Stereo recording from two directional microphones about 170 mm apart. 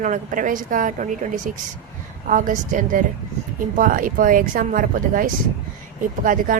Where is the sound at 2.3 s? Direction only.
50° right (ahead or behind).